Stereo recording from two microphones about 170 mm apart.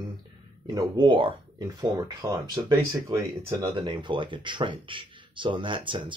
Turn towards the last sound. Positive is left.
turn(degrees=-30)  # may be behind; listen again after turning